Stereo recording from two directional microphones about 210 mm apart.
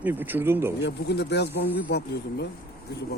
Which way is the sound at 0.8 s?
50° left (ahead or behind).